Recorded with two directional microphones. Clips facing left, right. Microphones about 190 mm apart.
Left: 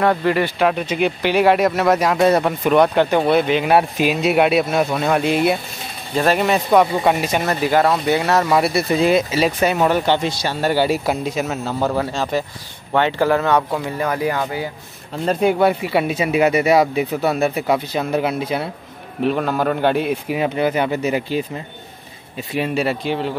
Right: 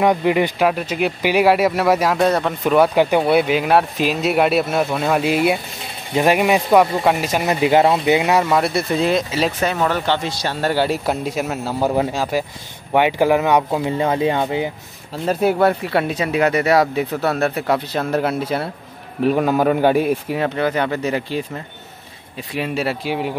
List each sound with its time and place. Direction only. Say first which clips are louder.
0.0 s speech: right 1 dB; 15° right (ahead or behind)
0.7 s speech: left 1 dB; 5° right (ahead or behind)
7.4 s speech: right 3 dB; 20° right (ahead or behind)
8.5 s speech: left 1 dB; 5° left (ahead or behind)
10.5 s speech: left 1 dB; 5° left (ahead or behind)
11.9 s speech: right 2 dB; 20° right (ahead or behind)
12.2 s speech: even; 10° right (ahead or behind); by 14.7 s 25° right (ahead or behind)
15.6 s speech: even; 5° left (ahead or behind)
16.9 s speech: left 1 dB; centre (ahead or behind)
20.2 s speech: left 1 dB; 10° left (ahead or behind)
22.5 s speech: left 2 dB; centre (ahead or behind)